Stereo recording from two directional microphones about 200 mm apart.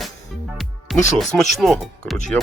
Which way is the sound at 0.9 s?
Centre (ahead or behind).